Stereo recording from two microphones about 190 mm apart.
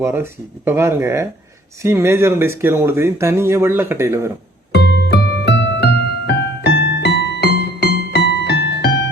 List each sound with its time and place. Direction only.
0.0 s speech: 10° right (ahead or behind)
4.7 s music: 60° left (ahead or behind)